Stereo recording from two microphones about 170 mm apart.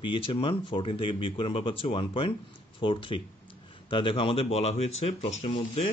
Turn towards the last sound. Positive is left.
turn(degrees=35)  # may be behind; listen again after turning